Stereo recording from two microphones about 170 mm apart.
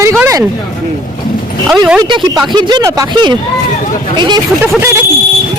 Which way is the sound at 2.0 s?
30° right (ahead or behind).